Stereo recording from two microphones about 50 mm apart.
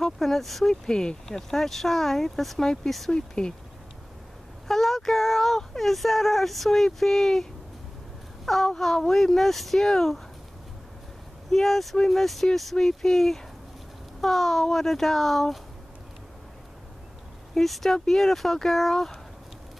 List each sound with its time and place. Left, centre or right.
0.0 s speech: centre
0.8 s speech: centre
4.6 s speech: centre
8.6 s speech: centre
11.5 s speech: centre
17.6 s speech: centre